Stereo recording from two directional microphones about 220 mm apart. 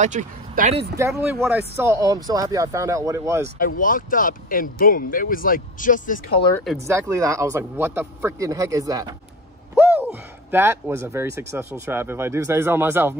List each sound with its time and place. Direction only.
0.0 s speech: 35° right (ahead or behind)
1.3 s speech: 5° right (ahead or behind)
3.5 s speech: 40° left (ahead or behind)
6.8 s speech: 15° right (ahead or behind)